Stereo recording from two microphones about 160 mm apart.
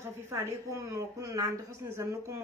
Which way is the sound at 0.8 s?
20° right (ahead or behind).